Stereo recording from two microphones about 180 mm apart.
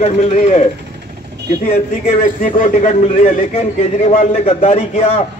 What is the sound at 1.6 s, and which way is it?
A man's voice, 35° left (ahead or behind).